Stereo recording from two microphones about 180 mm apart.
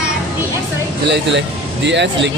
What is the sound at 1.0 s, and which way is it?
Speech, 75° right (ahead or behind).